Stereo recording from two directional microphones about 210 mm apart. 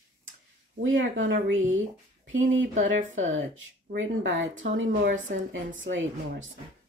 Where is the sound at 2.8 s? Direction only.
65° right (ahead or behind).